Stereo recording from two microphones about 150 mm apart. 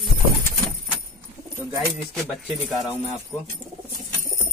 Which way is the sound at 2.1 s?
Centre (ahead or behind).